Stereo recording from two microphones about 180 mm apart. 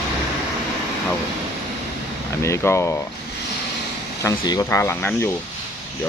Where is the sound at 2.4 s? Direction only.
15° left (ahead or behind).